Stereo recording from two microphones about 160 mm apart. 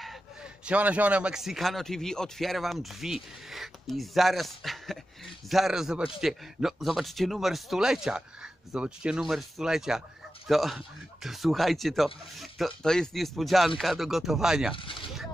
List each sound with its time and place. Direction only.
0.0 s speech: 5° right (ahead or behind)
14.8 s speech: 30° left (ahead or behind)